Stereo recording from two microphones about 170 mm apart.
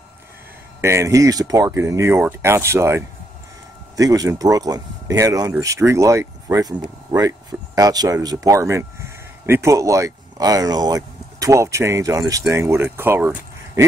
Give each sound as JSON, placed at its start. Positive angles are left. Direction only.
{"t": 0.7, "sound": "speech", "side_deg": -15}